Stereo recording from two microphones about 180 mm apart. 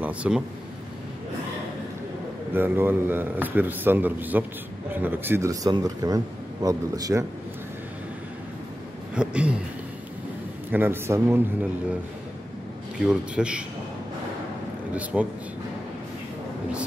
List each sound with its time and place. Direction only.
0.0 s a man's voice: 5° right (ahead or behind)
2.5 s a man's voice: 10° right (ahead or behind)
9.1 s a man's voice: 5° right (ahead or behind)
10.7 s a man's voice: 10° right (ahead or behind)
13.0 s speech: 5° right (ahead or behind)
15.1 s speech: 5° right (ahead or behind)